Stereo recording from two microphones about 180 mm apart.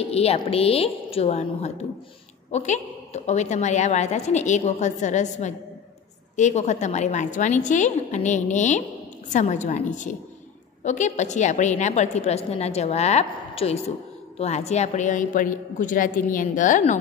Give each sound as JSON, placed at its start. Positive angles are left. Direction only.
{"t": 0.1, "sound": "a woman's voice", "side_deg": 35}